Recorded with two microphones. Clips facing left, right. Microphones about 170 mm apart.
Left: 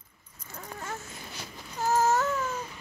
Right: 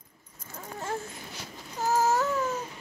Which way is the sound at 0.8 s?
30° right (ahead or behind).